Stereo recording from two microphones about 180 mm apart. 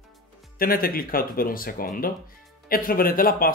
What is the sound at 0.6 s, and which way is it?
Speech, 55° left (ahead or behind).